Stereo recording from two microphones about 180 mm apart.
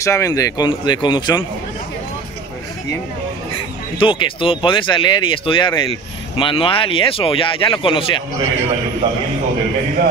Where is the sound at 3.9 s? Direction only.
30° left (ahead or behind).